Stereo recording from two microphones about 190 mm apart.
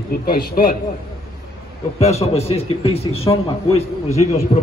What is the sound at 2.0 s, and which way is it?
A man's voice, 35° left (ahead or behind).